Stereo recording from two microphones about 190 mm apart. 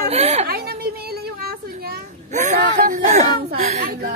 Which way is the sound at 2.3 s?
40° right (ahead or behind).